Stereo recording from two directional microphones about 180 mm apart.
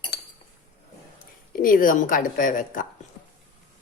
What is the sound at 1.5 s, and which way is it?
A woman's voice, 50° left (ahead or behind).